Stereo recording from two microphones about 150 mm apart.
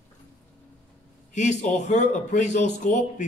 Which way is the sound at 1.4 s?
50° left (ahead or behind).